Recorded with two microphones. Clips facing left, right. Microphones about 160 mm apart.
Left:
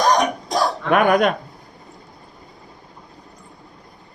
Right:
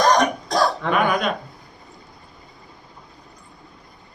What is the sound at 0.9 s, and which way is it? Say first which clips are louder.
Speech: left 5 dB; 55° left (ahead or behind).